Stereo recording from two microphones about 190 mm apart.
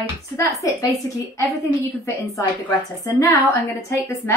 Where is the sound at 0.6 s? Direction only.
15° left (ahead or behind).